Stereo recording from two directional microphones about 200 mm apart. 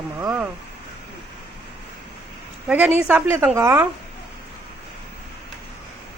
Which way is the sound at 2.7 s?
10° right (ahead or behind).